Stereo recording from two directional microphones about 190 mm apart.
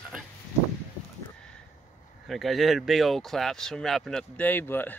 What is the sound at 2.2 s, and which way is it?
Speech, centre (ahead or behind).